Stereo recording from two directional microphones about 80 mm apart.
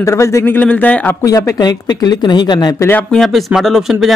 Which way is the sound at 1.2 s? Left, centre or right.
Left.